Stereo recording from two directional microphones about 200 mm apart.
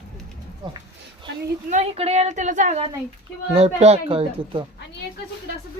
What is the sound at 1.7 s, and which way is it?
A woman's voice, 35° right (ahead or behind).